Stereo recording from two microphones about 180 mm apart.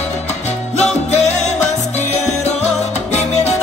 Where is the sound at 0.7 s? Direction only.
40° left (ahead or behind).